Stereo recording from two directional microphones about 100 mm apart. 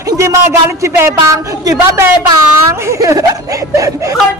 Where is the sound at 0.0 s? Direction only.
30° right (ahead or behind).